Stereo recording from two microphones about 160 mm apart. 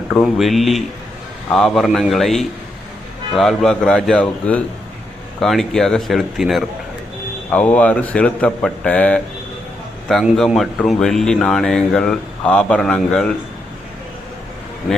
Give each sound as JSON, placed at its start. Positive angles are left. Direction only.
{"t": 0.1, "sound": "speech", "side_deg": 0}